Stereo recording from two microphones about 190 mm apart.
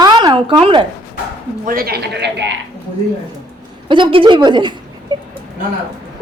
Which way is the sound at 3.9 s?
25° right (ahead or behind).